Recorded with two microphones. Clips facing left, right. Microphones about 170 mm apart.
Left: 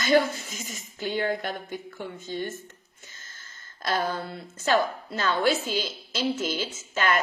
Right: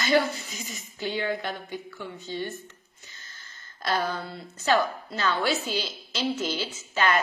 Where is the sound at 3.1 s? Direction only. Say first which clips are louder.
Right 1 dB; 45° left (ahead or behind).